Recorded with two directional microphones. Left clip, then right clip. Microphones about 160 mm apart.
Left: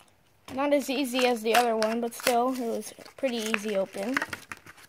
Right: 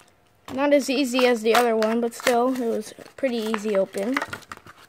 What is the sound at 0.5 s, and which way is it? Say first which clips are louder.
Speech: right 6 dB; 25° right (ahead or behind).